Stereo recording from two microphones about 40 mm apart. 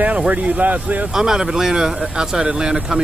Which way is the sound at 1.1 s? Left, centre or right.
Centre.